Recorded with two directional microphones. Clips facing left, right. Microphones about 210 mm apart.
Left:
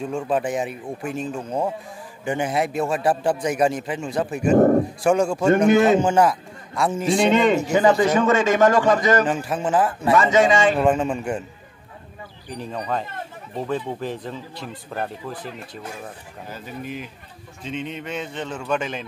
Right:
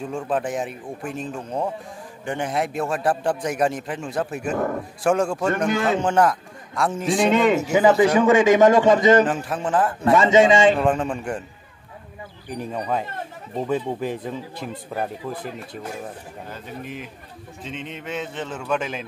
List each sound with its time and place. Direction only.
0.0 s a man's voice: centre (ahead or behind)
4.5 s speech: 40° left (ahead or behind)
5.0 s a man's voice: centre (ahead or behind)
5.7 s a man's voice: 20° left (ahead or behind)
5.9 s a man's voice: centre (ahead or behind); by 9.2 s 25° right (ahead or behind)
9.2 s a man's voice: centre (ahead or behind)
10.1 s a man's voice: 25° right (ahead or behind)
10.8 s a man's voice: centre (ahead or behind)
12.4 s speech: 10° right (ahead or behind)
16.4 s a man's voice: 5° left (ahead or behind)